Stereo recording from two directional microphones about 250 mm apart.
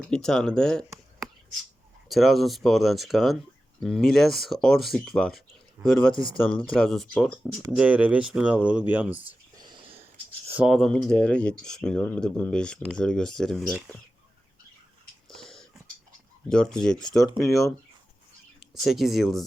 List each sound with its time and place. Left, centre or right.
0.1 s speech: centre
2.0 s speech: centre
9.6 s whispering: centre
10.5 s speech: centre
15.3 s a sound: centre
16.5 s speech: centre